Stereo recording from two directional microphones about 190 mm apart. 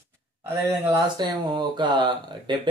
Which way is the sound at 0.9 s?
20° right (ahead or behind).